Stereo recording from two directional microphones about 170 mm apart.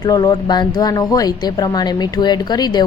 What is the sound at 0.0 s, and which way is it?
A woman's voice, 25° left (ahead or behind).